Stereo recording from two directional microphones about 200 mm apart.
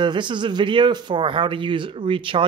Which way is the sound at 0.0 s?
25° right (ahead or behind).